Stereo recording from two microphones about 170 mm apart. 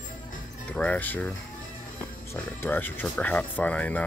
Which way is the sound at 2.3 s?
15° left (ahead or behind).